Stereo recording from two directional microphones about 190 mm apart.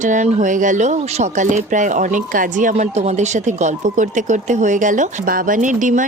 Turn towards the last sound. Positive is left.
turn(degrees=-40)  # may be behind; listen again after turning